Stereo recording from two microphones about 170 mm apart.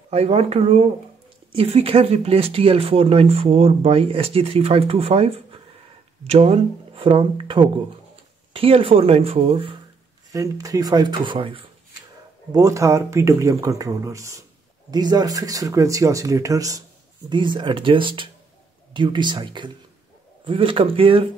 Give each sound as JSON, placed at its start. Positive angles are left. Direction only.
{"t": 0.1, "sound": "speech", "side_deg": -35}
{"t": 10.3, "sound": "speech", "side_deg": -20}
{"t": 12.5, "sound": "speech", "side_deg": -20}